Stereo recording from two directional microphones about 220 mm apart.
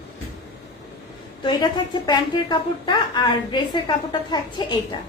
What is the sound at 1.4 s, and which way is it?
A woman's voice, 20° left (ahead or behind).